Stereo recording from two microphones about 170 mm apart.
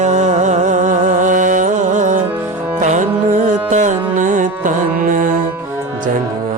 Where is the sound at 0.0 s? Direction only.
45° right (ahead or behind).